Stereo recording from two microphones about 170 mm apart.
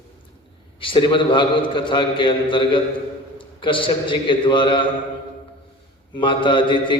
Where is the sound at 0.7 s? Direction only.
30° left (ahead or behind).